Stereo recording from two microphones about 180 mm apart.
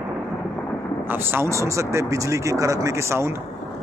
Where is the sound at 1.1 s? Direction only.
10° right (ahead or behind).